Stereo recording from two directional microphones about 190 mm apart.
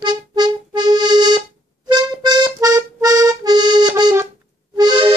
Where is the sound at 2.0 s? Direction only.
20° right (ahead or behind).